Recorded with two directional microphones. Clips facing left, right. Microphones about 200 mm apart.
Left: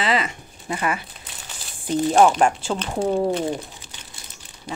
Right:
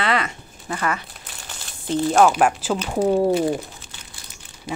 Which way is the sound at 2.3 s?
5° right (ahead or behind).